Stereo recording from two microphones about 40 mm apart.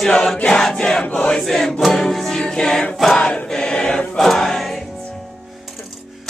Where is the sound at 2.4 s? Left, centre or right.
Centre.